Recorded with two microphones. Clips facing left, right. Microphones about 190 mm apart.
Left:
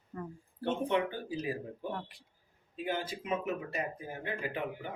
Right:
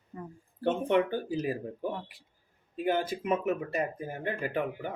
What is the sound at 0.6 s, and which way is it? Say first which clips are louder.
Speech: right 5 dB; 50° right (ahead or behind).